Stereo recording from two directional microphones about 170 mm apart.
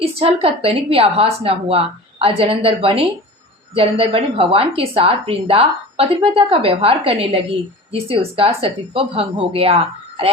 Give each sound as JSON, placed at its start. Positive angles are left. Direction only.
{"t": 0.0, "sound": "a woman's voice", "side_deg": -35}